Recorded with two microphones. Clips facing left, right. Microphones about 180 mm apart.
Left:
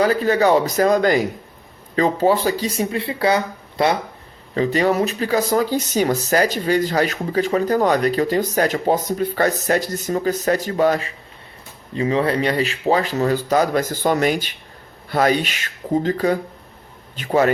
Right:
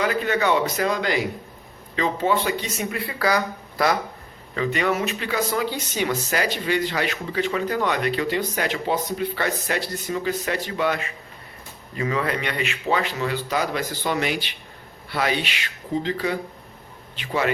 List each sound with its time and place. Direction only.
0.0 s speech: 35° left (ahead or behind)